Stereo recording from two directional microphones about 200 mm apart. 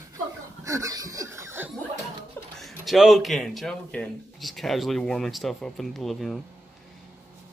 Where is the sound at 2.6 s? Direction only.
Centre (ahead or behind).